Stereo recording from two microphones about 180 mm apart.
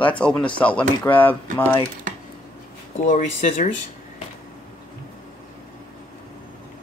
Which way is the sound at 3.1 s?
45° left (ahead or behind).